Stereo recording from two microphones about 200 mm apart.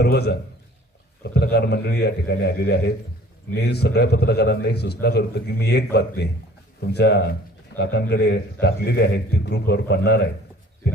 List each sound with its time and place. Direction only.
0.0 s a man's voice: 55° left (ahead or behind)